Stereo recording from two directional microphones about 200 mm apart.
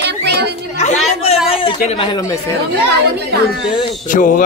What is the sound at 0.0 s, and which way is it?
Chatter, 55° right (ahead or behind).